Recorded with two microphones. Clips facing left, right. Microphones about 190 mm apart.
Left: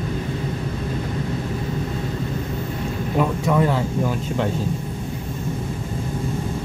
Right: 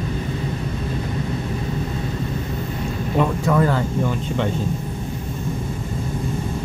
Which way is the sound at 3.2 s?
5° left (ahead or behind).